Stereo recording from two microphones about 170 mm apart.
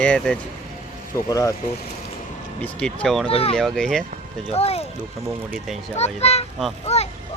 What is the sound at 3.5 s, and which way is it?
Speech, 5° left (ahead or behind).